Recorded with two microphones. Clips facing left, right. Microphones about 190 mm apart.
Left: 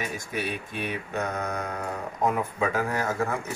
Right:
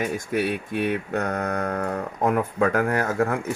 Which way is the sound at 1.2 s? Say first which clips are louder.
Right 5 dB; 65° right (ahead or behind).